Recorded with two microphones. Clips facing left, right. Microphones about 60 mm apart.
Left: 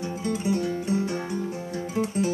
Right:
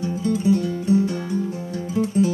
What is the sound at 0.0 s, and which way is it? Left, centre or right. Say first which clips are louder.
Guitar: right 6 dB; left.